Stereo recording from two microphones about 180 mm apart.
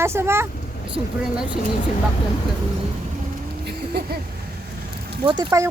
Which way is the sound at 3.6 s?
65° right (ahead or behind).